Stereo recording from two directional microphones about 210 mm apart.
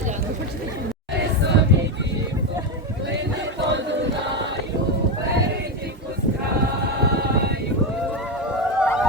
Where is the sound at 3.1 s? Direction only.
55° right (ahead or behind).